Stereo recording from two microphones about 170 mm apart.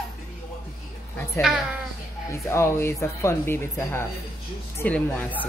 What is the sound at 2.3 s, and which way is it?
Speech, 15° left (ahead or behind).